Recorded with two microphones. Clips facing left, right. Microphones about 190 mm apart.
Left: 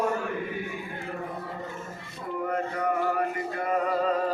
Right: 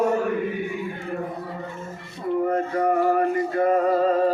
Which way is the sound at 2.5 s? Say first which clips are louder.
Right 3 dB; 40° right (ahead or behind).